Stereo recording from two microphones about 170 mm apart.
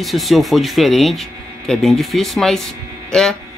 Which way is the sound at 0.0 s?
Centre (ahead or behind).